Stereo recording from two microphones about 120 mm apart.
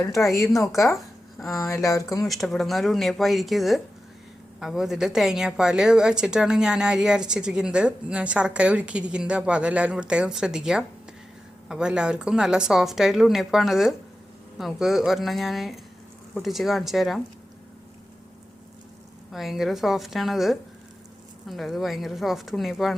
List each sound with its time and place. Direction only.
0.3 s speech: centre (ahead or behind)
1.9 s speech: 30° left (ahead or behind)
2.2 s a woman's voice: centre (ahead or behind)
19.3 s speech: centre (ahead or behind)